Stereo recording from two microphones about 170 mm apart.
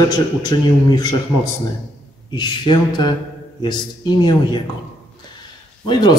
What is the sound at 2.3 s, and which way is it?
A man's voice, 25° left (ahead or behind).